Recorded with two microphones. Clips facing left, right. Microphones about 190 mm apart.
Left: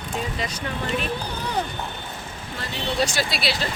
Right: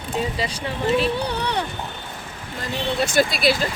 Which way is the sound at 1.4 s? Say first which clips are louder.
Right 2 dB; 70° right (ahead or behind).